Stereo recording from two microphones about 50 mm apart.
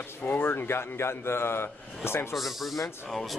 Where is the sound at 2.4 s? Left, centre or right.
Centre.